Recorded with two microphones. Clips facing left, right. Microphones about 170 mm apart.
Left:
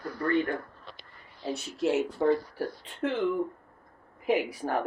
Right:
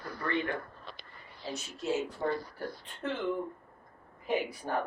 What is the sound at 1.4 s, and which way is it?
Speech, 70° left (ahead or behind).